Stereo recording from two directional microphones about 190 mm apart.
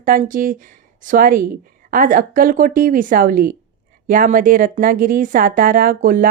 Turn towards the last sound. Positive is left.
turn(degrees=-50)  # may be behind; listen again after turning